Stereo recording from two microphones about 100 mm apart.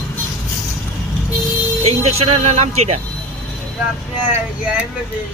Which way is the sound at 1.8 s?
90° right.